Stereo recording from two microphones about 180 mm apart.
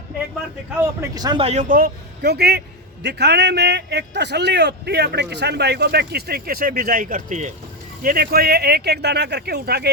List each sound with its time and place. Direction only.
0.8 s a man's voice: 20° right (ahead or behind)
1.5 s a man's voice: 45° right (ahead or behind)
8.0 s a man's voice: 55° right (ahead or behind)